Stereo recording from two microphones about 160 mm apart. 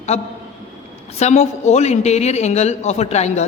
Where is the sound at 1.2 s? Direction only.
45° left (ahead or behind).